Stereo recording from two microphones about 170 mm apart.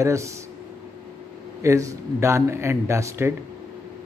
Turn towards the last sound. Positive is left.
turn(degrees=-15)  # may be behind; listen again after turning